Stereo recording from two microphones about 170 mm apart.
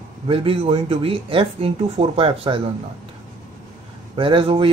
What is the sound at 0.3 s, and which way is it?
Speech, 35° right (ahead or behind).